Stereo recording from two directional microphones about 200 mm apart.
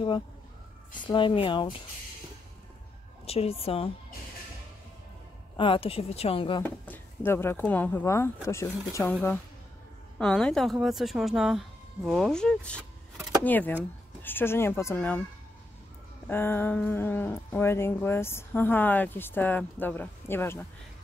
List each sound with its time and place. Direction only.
1.0 s speech: 25° left (ahead or behind)
3.3 s speech: 30° left (ahead or behind)
5.6 s speech: 25° left (ahead or behind)
6.6 s speech: 10° left (ahead or behind)
10.1 s speech: 5° left (ahead or behind)
16.3 s speech: 10° left (ahead or behind)